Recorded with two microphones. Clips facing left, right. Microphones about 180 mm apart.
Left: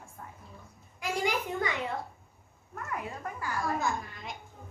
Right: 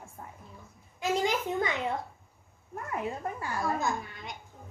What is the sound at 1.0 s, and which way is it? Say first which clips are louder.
Speech: right 3 dB; 20° right (ahead or behind).